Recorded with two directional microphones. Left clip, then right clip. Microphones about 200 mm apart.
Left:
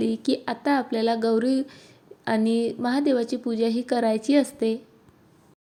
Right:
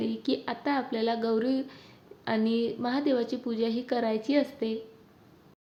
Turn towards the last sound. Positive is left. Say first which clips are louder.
# left 6 dB
turn(degrees=30)  # may be behind; listen again after turning